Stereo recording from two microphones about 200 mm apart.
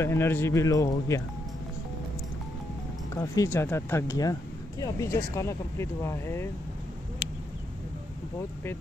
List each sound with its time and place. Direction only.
0.0 s speech: 10° left (ahead or behind)
3.2 s speech: 15° left (ahead or behind)